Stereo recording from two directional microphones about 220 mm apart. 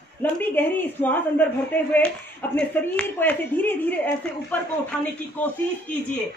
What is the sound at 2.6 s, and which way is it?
A woman's voice, 5° left (ahead or behind).